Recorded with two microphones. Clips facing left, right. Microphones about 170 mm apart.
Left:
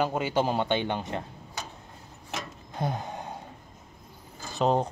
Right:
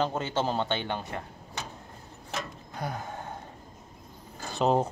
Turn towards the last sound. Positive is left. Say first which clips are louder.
# even
turn(degrees=-5)  # may be behind; listen again after turning